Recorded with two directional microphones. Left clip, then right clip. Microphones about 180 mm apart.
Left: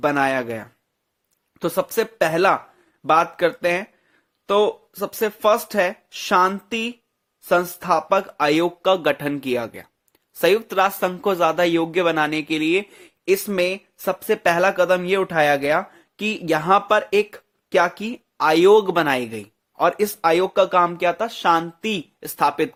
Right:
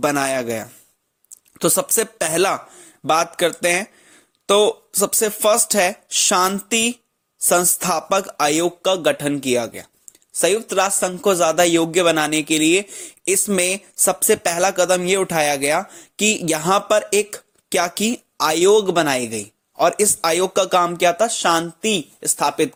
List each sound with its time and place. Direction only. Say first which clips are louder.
0.0 s speech: even; 30° right (ahead or behind)
1.3 s a woman's voice: right 5 dB; 30° right (ahead or behind)
13.2 s speech: even; 30° right (ahead or behind)
17.7 s speech: left 1 dB; 35° right (ahead or behind)
18.3 s a woman's voice: left 1 dB; 20° right (ahead or behind)